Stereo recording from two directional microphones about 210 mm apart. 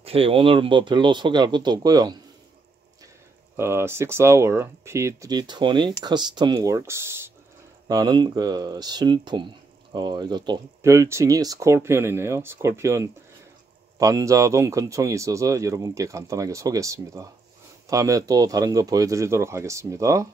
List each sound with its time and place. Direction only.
0.0 s speech: 25° right (ahead or behind)
3.5 s speech: 10° right (ahead or behind)